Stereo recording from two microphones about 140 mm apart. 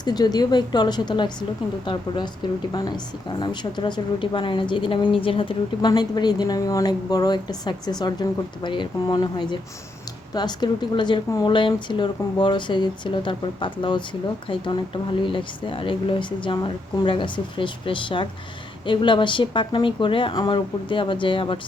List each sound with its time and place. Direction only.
0.0 s a woman's voice: 30° left (ahead or behind)